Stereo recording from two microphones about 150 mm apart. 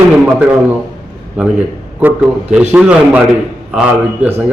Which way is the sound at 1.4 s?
10° right (ahead or behind).